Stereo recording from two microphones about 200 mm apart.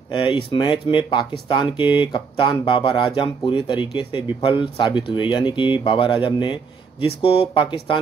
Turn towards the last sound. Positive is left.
turn(degrees=25)  # may be behind; listen again after turning